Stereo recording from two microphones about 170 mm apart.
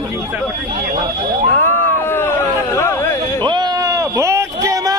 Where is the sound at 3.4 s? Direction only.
25° right (ahead or behind).